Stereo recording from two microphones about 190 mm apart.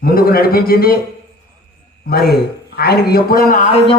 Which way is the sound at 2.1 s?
55° left (ahead or behind).